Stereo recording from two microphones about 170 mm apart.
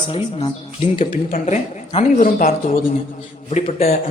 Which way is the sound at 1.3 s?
45° left (ahead or behind).